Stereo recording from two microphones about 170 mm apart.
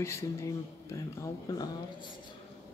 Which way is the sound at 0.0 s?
15° left (ahead or behind).